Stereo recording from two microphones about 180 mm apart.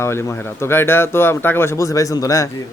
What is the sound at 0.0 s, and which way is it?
Speech, 15° left (ahead or behind).